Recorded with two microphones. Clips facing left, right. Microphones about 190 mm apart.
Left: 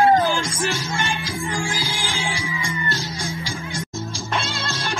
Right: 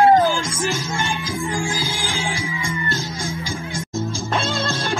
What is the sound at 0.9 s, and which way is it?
Music, 50° right (ahead or behind).